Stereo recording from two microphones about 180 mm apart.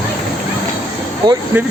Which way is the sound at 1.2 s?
25° right (ahead or behind).